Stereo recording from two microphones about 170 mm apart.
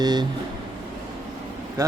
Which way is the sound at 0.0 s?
25° right (ahead or behind).